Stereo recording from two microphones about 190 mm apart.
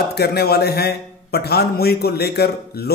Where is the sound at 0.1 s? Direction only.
55° left (ahead or behind).